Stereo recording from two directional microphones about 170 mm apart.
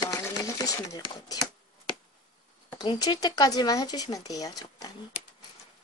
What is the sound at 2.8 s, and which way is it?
Speech, 25° left (ahead or behind).